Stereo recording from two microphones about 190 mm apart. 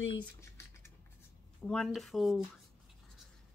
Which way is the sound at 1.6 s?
5° left (ahead or behind).